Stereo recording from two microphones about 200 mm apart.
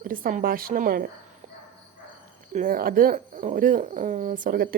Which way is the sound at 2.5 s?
40° right (ahead or behind).